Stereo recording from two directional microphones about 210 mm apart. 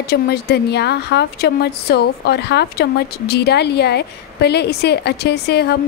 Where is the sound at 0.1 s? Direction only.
50° left (ahead or behind).